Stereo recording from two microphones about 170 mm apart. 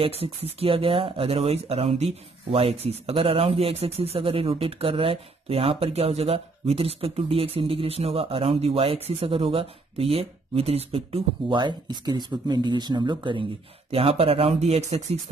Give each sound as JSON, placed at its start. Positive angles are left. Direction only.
{"t": 0.0, "sound": "speech", "side_deg": -35}